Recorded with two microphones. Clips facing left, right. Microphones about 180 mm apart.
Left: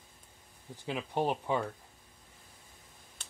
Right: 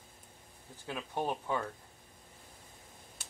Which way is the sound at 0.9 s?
20° left (ahead or behind).